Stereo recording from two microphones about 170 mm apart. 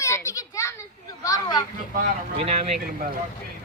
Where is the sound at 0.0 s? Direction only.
15° left (ahead or behind).